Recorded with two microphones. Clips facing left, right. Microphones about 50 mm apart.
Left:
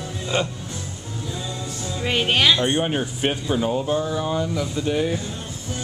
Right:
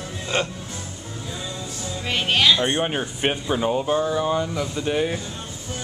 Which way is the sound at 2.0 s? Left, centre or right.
Centre.